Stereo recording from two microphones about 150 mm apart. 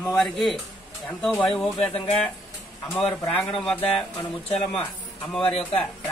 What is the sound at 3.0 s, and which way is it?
A man's voice, 5° left (ahead or behind).